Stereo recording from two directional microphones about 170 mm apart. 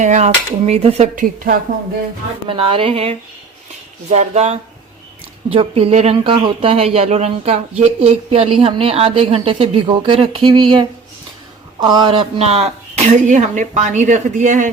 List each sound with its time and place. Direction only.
0.0 s speech: 45° right (ahead or behind)
2.5 s speech: 30° right (ahead or behind)